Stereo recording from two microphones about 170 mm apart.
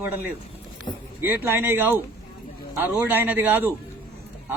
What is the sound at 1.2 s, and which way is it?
A man's voice, 10° right (ahead or behind).